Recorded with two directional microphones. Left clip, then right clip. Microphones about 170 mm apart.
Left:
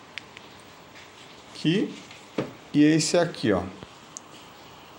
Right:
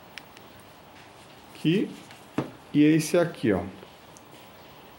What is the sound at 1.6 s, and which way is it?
A man's voice, centre (ahead or behind).